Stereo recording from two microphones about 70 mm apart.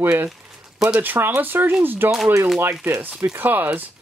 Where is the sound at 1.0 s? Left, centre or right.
Right.